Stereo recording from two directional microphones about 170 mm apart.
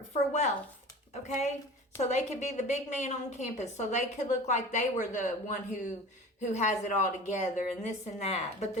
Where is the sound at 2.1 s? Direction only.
40° left (ahead or behind).